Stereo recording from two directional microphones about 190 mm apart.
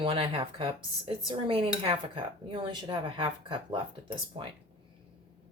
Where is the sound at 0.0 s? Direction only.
30° right (ahead or behind).